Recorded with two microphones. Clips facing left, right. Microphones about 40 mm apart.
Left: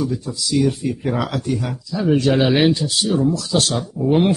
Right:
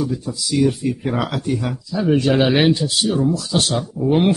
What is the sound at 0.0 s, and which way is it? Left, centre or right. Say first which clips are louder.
Speech: even; centre.